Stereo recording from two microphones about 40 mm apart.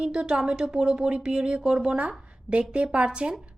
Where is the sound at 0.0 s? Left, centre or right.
Right.